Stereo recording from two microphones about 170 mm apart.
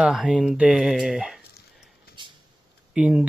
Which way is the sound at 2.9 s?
5° right (ahead or behind).